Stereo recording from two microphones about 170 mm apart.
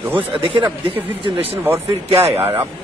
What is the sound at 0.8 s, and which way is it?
Speech, 35° right (ahead or behind).